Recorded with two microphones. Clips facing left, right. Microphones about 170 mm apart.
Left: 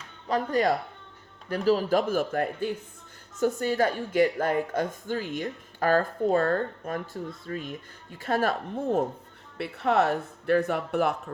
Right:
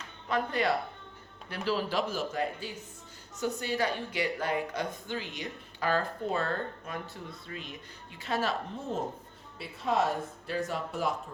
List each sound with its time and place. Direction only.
0.3 s speech: 40° left (ahead or behind); by 11.2 s 60° left (ahead or behind)